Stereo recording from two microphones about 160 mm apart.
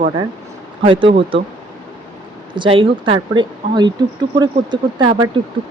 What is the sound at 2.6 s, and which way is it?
Speech, 35° right (ahead or behind).